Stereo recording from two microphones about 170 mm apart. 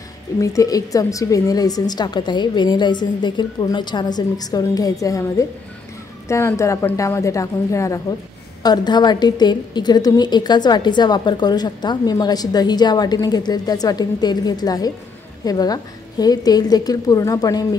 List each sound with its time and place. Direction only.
0.4 s a woman's voice: 20° left (ahead or behind)